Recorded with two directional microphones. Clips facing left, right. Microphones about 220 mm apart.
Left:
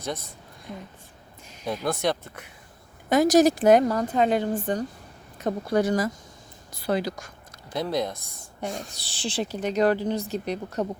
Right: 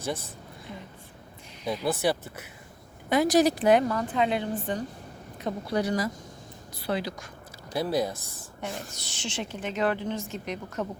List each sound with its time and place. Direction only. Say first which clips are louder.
0.7 s a sound: left 4 dB; 45° left (ahead or behind)
1.6 s speech: even; 5° right (ahead or behind)
3.1 s a woman's voice: left 4 dB; 45° left (ahead or behind)
7.5 s speech: even; 5° right (ahead or behind)
9.0 s speech: left 5 dB; 35° left (ahead or behind)